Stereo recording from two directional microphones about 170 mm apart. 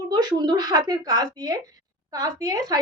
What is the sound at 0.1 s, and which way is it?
Speech, 25° right (ahead or behind).